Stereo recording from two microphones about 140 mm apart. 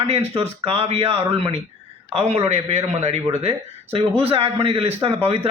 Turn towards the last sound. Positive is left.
turn(degrees=-40)  # may be behind; listen again after turning